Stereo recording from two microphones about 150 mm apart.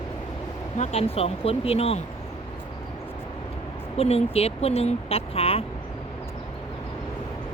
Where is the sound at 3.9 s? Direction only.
45° left (ahead or behind).